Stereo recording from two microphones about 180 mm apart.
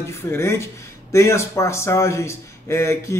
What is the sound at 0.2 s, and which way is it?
A man's voice, 15° left (ahead or behind).